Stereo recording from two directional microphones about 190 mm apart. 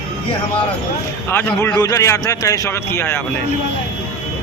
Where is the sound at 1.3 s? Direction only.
10° left (ahead or behind).